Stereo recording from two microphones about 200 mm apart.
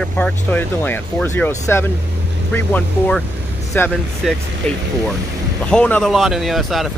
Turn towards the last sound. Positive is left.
turn(degrees=0)  # may be behind; listen again after turning